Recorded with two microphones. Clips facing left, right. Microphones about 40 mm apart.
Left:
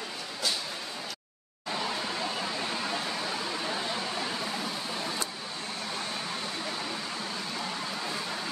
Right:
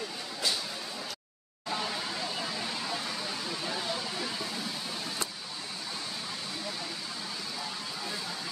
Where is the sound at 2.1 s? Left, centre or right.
Left.